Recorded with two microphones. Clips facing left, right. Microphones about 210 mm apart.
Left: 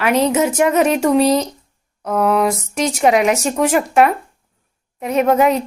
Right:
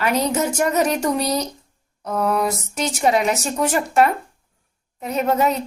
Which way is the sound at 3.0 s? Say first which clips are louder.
Left 4 dB; 70° left (ahead or behind).